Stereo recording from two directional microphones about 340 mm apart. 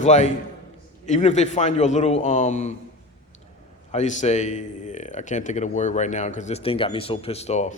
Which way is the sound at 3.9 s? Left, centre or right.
Centre.